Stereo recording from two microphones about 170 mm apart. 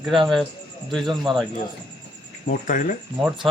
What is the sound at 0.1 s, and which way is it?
A man's voice, centre (ahead or behind).